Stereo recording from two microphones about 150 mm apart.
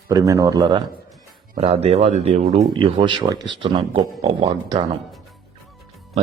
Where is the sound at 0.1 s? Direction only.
25° right (ahead or behind).